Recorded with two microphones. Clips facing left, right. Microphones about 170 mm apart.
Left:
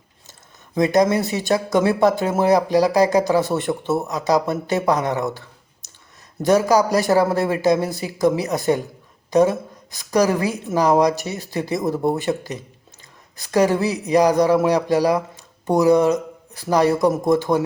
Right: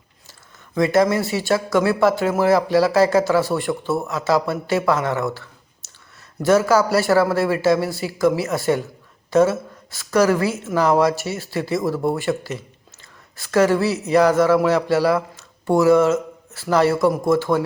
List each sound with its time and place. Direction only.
0.3 s a woman's voice: 20° left (ahead or behind)